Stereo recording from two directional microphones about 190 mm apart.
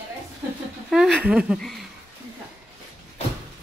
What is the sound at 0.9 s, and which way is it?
Speech, 5° right (ahead or behind).